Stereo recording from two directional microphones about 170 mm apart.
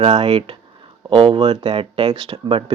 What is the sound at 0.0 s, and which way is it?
Speech, 35° right (ahead or behind).